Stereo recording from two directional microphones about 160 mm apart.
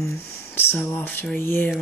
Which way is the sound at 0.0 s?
15° left (ahead or behind).